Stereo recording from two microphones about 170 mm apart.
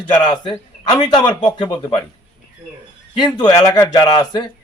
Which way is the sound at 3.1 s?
25° left (ahead or behind).